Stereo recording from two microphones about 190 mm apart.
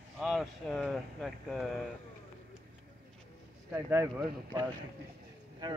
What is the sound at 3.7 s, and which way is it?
Speech, 15° right (ahead or behind).